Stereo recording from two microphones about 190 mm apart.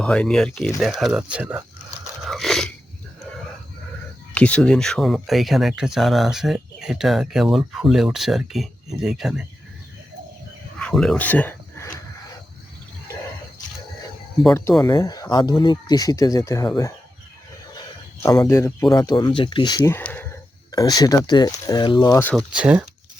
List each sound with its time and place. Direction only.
0.0 s speech: 5° left (ahead or behind)
2.2 s chewing: centre (ahead or behind)
4.4 s speech: 5° left (ahead or behind)
10.8 s a sound: 5° left (ahead or behind)
14.8 s speech: 20° left (ahead or behind)
18.2 s speech: 15° left (ahead or behind)
22.5 s speech: 5° right (ahead or behind)